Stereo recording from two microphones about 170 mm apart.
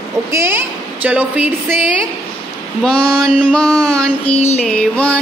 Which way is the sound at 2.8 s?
5° left (ahead or behind).